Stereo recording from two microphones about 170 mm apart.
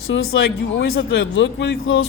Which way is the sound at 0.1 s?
90° left.